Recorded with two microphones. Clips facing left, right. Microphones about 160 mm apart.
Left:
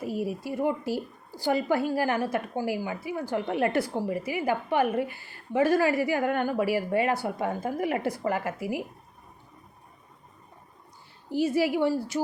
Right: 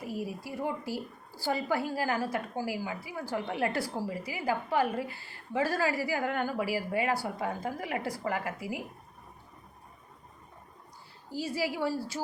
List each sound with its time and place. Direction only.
0.0 s a woman's voice: 25° left (ahead or behind)
5.0 s a woman's voice: 30° right (ahead or behind)
5.5 s a woman's voice: 20° left (ahead or behind)
11.3 s a woman's voice: 20° left (ahead or behind)